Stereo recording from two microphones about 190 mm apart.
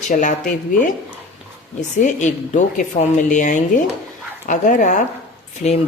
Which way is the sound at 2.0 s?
40° left (ahead or behind).